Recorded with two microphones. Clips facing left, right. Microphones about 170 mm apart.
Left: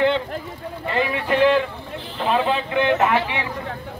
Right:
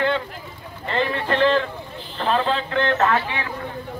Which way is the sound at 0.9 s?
10° left (ahead or behind).